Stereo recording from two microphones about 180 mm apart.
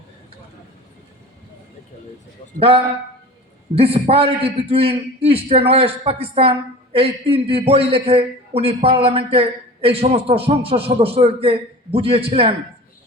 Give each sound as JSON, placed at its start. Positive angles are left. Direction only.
{"t": 2.6, "sound": "a man's voice", "side_deg": -30}